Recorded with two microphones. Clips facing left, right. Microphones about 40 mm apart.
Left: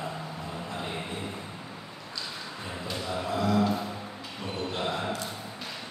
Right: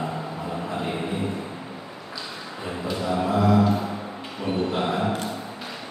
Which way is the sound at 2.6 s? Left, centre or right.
Centre.